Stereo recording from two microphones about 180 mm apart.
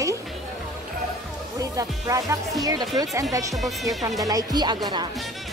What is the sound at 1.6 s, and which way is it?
Speech, 20° right (ahead or behind).